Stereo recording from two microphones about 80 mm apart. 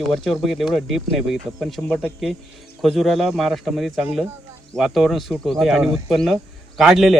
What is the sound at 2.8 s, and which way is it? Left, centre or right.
Speech, centre.